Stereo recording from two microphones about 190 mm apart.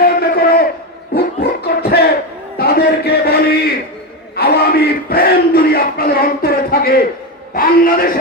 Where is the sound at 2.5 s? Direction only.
55° left (ahead or behind).